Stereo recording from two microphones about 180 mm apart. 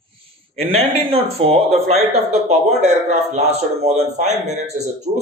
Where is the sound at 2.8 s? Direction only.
40° right (ahead or behind).